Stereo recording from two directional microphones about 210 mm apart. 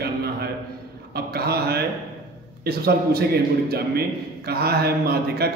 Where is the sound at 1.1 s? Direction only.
50° right (ahead or behind).